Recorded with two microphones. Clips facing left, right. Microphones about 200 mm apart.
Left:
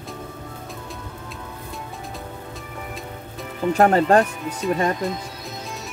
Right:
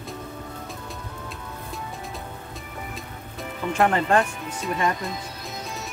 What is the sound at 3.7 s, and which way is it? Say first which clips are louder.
Speech: left 5 dB; 40° left (ahead or behind).